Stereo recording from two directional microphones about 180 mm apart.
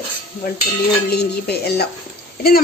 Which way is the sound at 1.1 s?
65° left (ahead or behind).